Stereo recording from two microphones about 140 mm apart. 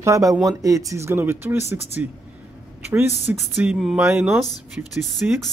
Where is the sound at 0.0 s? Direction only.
20° right (ahead or behind).